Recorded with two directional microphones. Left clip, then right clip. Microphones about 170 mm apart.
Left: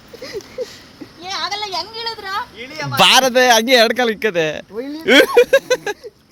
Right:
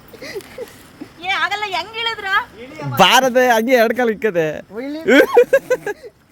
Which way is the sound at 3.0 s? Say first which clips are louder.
Even; 20° right (ahead or behind).